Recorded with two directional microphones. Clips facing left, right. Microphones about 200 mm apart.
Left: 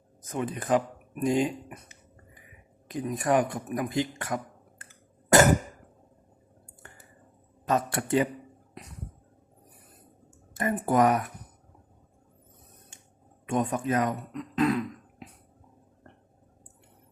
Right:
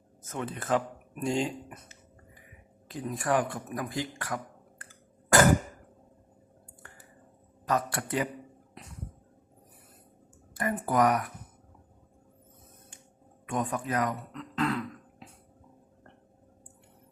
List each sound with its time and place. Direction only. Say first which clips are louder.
0.2 s speech: left 4 dB; 15° left (ahead or behind)
4.8 s a sound: right 1 dB; 20° left (ahead or behind)
7.6 s speech: left 2 dB; 25° left (ahead or behind)
10.5 s speech: left 3 dB; 25° left (ahead or behind)
13.5 s throat clearing: left 4 dB; 25° left (ahead or behind)